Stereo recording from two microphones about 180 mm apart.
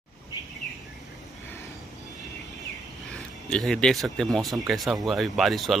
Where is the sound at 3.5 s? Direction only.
5° left (ahead or behind).